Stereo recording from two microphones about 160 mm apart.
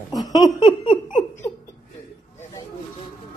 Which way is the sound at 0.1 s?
25° left (ahead or behind).